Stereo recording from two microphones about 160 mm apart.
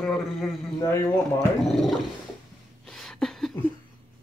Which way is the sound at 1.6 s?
Centre (ahead or behind).